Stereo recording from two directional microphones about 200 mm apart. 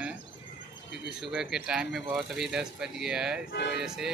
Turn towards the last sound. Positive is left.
turn(degrees=0)  # may be behind; listen again after turning